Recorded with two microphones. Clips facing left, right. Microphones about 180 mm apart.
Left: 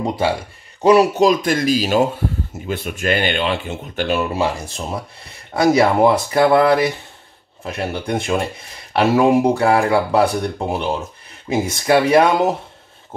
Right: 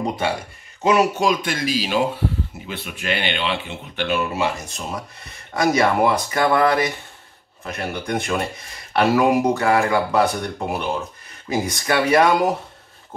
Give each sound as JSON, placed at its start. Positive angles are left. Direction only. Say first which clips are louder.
{"t": 0.8, "sound": "speech", "louder": "left 5 dB", "side_deg": 35}